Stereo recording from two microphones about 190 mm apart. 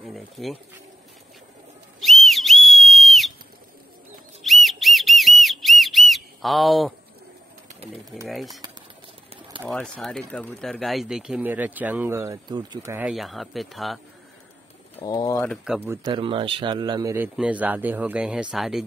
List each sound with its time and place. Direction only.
0.0 s speech: centre (ahead or behind)
2.0 s whistle: centre (ahead or behind)
4.4 s whistle: centre (ahead or behind)
8.3 s speech: centre (ahead or behind)
9.7 s speech: 5° left (ahead or behind); by 13.1 s 10° right (ahead or behind)
13.1 s speech: centre (ahead or behind)
15.0 s speech: 20° left (ahead or behind)
15.5 s speech: 5° right (ahead or behind)
16.1 s speech: 25° right (ahead or behind); by 18.9 s centre (ahead or behind)